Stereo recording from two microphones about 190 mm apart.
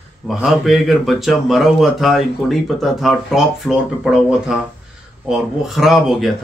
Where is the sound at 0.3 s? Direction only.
Centre (ahead or behind).